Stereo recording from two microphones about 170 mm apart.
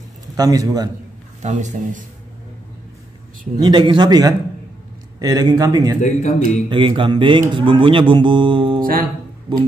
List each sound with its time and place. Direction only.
0.4 s a man's voice: 20° right (ahead or behind)
1.4 s a man's voice: 45° right (ahead or behind)
3.5 s a man's voice: 25° right (ahead or behind)
5.9 s a man's voice: 45° left (ahead or behind)
6.7 s a man's voice: 30° right (ahead or behind)